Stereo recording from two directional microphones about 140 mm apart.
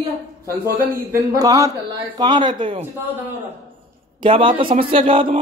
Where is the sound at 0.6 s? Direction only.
90° right.